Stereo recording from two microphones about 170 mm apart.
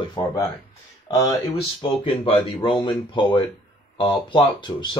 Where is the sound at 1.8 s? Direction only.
30° left (ahead or behind).